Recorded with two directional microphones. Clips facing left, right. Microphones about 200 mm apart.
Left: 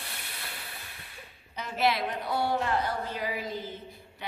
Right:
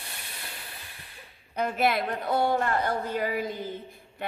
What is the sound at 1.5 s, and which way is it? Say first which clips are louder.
A woman's voice: right 3 dB; 55° right (ahead or behind).